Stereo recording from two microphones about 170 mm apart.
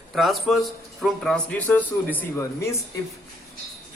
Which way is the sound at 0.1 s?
Centre (ahead or behind).